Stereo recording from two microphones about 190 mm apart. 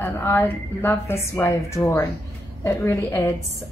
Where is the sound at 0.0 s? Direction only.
15° left (ahead or behind).